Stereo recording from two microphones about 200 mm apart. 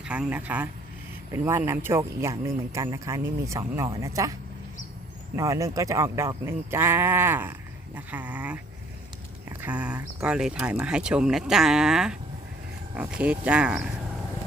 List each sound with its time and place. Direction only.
0.0 s speech: 5° right (ahead or behind)
5.4 s speech: 15° right (ahead or behind)